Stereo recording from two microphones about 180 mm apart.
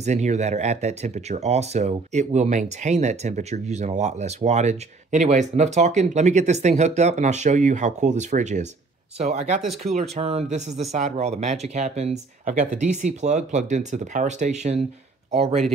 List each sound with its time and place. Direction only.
0.0 s speech: 40° right (ahead or behind)